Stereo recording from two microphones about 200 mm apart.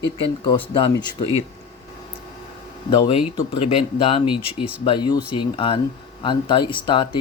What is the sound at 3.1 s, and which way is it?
Speech, 25° left (ahead or behind).